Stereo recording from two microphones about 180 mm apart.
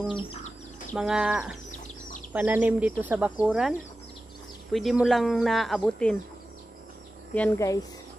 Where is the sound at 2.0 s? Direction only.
45° left (ahead or behind).